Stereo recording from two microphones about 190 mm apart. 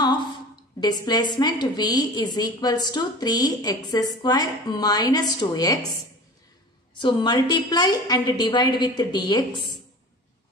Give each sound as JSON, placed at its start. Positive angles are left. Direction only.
{"t": 0.7, "sound": "a woman's voice", "side_deg": 20}
{"t": 7.0, "sound": "a woman's voice", "side_deg": 25}